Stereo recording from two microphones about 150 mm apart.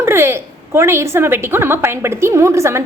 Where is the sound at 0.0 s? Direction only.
15° right (ahead or behind).